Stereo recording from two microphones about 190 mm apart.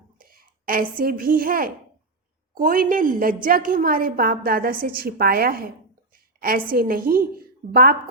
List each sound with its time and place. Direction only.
0.2 s a woman's voice: 50° right (ahead or behind)